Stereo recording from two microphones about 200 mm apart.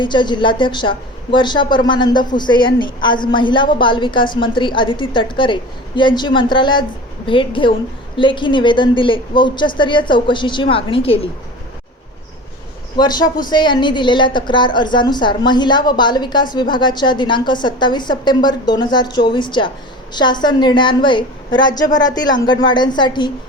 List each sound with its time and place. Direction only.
0.0 s a woman's voice: 25° left (ahead or behind)
13.0 s a woman's voice: 20° left (ahead or behind)